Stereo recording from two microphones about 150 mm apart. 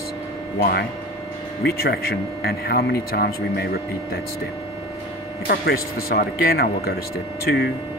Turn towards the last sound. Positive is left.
turn(degrees=90)